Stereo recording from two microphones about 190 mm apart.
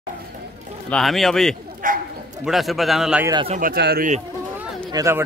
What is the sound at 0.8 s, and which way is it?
Speech, centre (ahead or behind).